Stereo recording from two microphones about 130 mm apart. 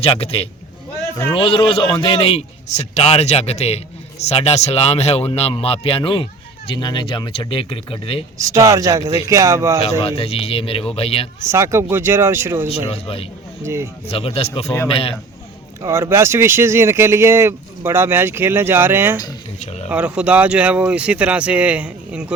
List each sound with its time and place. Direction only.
0.0 s speech: 50° left (ahead or behind)
2.7 s a man's voice: 60° left (ahead or behind)
8.4 s speech: 25° right (ahead or behind)
10.0 s speech: 50° left (ahead or behind)
11.4 s speech: 20° right (ahead or behind)
12.6 s speech: 45° left (ahead or behind)
13.7 s speech: 20° right (ahead or behind)
14.1 s speech: 50° left (ahead or behind)
15.8 s speech: 20° right (ahead or behind)
19.5 s a man's voice: 55° left (ahead or behind)
19.9 s speech: 10° right (ahead or behind)